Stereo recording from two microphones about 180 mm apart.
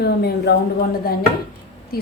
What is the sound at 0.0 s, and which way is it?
Speech, 65° left (ahead or behind).